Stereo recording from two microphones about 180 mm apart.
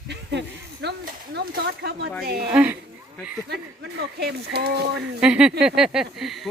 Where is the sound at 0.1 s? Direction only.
70° right (ahead or behind).